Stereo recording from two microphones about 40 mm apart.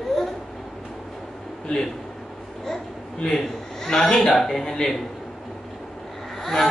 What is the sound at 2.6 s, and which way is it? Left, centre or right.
A man's voice, centre.